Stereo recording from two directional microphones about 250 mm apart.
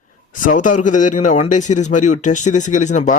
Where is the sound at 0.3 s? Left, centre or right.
Left.